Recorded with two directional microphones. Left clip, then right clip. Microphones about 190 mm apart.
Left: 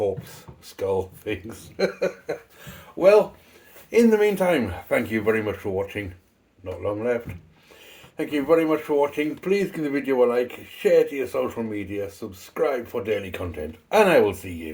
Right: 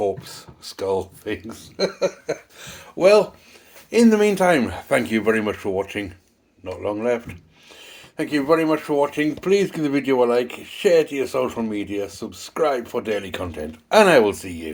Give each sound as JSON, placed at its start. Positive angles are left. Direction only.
{"t": 0.0, "sound": "speech", "side_deg": -30}
{"t": 2.2, "sound": "speech", "side_deg": -50}